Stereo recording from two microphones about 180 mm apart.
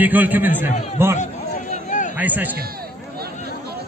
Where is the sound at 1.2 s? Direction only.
45° left (ahead or behind).